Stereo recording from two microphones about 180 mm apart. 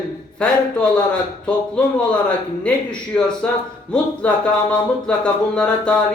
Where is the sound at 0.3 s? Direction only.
5° left (ahead or behind).